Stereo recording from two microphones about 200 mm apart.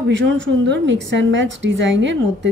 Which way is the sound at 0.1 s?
65° right (ahead or behind).